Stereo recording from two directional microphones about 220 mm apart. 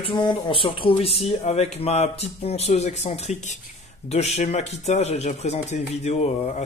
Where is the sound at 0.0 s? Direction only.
20° left (ahead or behind).